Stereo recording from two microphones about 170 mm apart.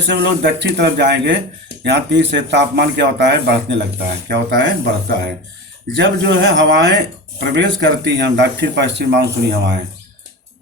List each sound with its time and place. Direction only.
0.1 s speech: 90° right
6.0 s speech: 90° right